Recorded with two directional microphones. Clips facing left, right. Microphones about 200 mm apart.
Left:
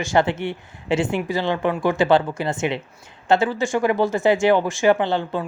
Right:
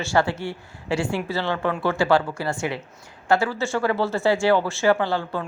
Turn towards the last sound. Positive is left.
turn(degrees=20)  # may be behind; listen again after turning